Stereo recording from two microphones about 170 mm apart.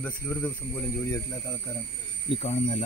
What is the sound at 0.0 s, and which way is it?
Speech, 10° left (ahead or behind).